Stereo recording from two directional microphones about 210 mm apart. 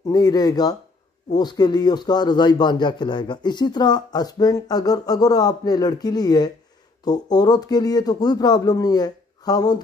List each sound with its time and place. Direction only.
0.0 s a man's voice: 20° left (ahead or behind)